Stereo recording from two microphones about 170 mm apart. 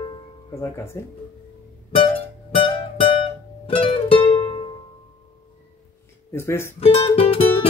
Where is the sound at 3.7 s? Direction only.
35° left (ahead or behind).